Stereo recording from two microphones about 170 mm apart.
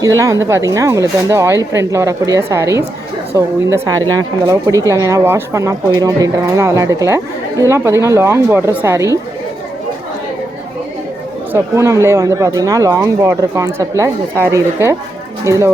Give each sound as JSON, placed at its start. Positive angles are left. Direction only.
{"t": 0.0, "sound": "a woman's voice", "side_deg": -20}
{"t": 11.5, "sound": "a woman's voice", "side_deg": -15}